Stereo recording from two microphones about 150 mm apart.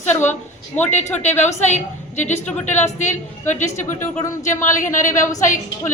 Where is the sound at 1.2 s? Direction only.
50° left (ahead or behind).